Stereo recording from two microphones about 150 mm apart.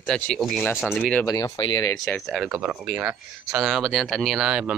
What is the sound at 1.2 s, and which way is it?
Speech, 25° left (ahead or behind).